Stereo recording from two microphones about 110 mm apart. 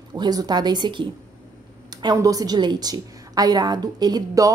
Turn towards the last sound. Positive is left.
turn(degrees=-35)  # may be behind; listen again after turning